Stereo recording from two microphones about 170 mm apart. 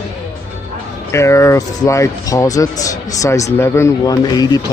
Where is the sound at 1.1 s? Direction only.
15° left (ahead or behind).